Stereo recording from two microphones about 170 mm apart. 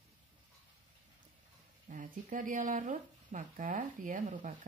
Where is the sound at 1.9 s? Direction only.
45° right (ahead or behind).